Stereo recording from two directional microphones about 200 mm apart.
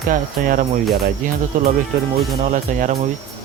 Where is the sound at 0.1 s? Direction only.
45° right (ahead or behind).